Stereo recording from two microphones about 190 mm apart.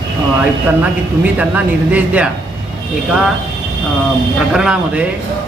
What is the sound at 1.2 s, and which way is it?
Speech, 10° right (ahead or behind).